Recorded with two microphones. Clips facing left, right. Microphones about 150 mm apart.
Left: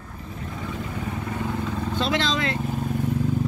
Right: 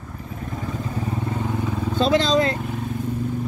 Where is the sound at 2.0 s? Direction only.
40° right (ahead or behind).